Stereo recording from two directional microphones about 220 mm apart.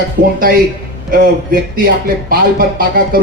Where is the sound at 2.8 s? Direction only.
40° right (ahead or behind).